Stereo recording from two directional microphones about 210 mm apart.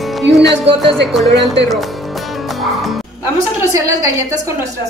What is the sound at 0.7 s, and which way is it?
Speech, centre (ahead or behind).